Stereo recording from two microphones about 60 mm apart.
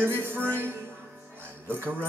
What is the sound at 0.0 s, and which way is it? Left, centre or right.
Music, right.